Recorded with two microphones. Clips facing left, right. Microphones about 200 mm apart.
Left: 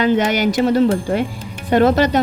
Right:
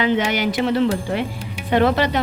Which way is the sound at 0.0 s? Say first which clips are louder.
Left 4 dB; 45° left (ahead or behind).